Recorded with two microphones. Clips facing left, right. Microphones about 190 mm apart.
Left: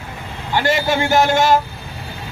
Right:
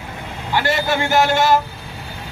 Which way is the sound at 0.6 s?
15° left (ahead or behind).